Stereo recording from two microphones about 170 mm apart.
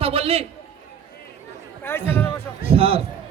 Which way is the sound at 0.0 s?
35° right (ahead or behind).